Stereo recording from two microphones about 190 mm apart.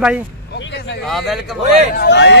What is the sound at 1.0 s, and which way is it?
Speech, centre (ahead or behind).